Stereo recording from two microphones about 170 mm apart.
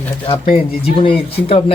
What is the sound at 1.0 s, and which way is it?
Speech, 30° left (ahead or behind).